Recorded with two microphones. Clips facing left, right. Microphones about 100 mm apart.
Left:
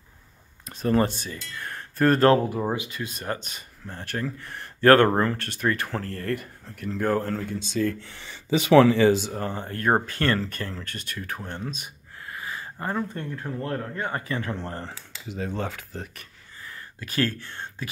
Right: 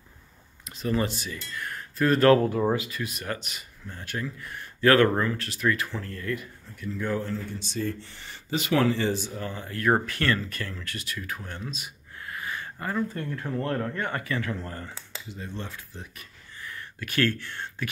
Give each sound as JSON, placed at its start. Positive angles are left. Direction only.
{"t": 0.7, "sound": "speech", "side_deg": 40}
{"t": 2.4, "sound": "speech", "side_deg": 15}
{"t": 4.0, "sound": "speech", "side_deg": 45}
{"t": 4.4, "sound": "speech", "side_deg": 30}
{"t": 5.2, "sound": "speech", "side_deg": 45}
{"t": 6.0, "sound": "speech", "side_deg": 55}
{"t": 7.8, "sound": "speech", "side_deg": 90}
{"t": 9.4, "sound": "speech", "side_deg": 35}
{"t": 9.9, "sound": "speech", "side_deg": 25}
{"t": 12.3, "sound": "a sound", "side_deg": 25}
{"t": 13.7, "sound": "speech", "side_deg": 20}
{"t": 15.2, "sound": "speech", "side_deg": 90}
{"t": 15.9, "sound": "speech", "side_deg": 60}
{"t": 16.6, "sound": "a sound", "side_deg": 30}